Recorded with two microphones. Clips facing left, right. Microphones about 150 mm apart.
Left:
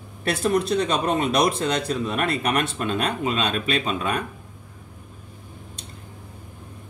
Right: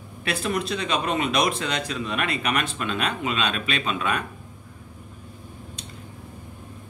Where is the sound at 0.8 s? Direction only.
40° left (ahead or behind).